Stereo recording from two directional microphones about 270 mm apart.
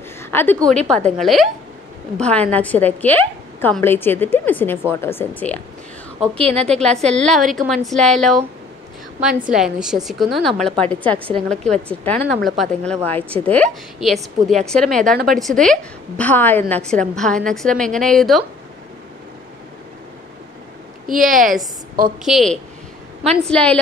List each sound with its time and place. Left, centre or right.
0.2 s a sound: centre
0.7 s a woman's voice: centre
6.4 s a woman's voice: right
6.8 s a woman's voice: centre
9.5 s a woman's voice: centre
21.1 s a woman's voice: right
22.2 s a woman's voice: centre